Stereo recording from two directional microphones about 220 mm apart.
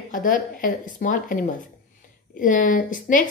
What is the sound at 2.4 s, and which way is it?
Speech, 35° left (ahead or behind).